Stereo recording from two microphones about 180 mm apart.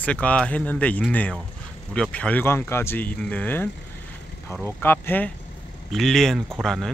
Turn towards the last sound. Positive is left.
turn(degrees=0)  # may be behind; listen again after turning